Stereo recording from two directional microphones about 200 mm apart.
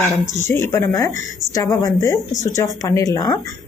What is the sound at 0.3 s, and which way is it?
A woman's voice, 10° left (ahead or behind).